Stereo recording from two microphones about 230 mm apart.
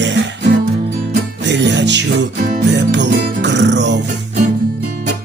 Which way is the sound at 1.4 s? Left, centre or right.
Right.